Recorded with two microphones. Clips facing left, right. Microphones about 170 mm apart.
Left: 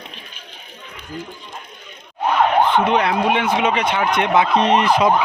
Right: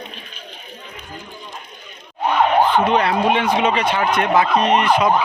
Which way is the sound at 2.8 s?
15° left (ahead or behind).